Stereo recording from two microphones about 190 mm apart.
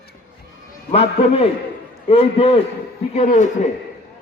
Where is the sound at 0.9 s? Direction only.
30° left (ahead or behind).